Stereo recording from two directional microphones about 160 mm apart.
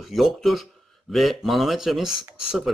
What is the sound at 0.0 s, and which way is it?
A man's voice, centre (ahead or behind).